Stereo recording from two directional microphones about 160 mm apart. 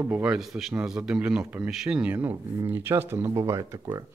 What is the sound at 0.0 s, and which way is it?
A man's voice, 10° right (ahead or behind).